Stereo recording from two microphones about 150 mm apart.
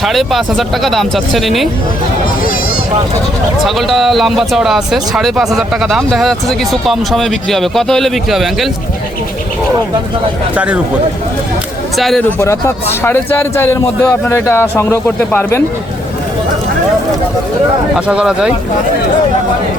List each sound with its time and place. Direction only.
0.0 s speech: centre (ahead or behind)
3.6 s speech: centre (ahead or behind)
11.9 s speech: centre (ahead or behind)
12.4 s speech: 15° left (ahead or behind)
17.9 s speech: 5° right (ahead or behind)